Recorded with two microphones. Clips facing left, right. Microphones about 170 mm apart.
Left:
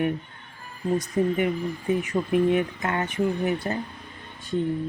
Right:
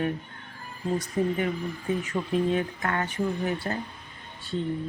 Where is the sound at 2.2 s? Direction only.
10° left (ahead or behind).